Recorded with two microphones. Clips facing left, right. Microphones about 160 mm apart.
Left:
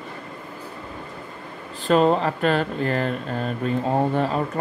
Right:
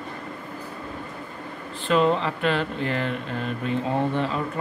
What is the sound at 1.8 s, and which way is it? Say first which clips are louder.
Speech: left 3 dB; 40° left (ahead or behind).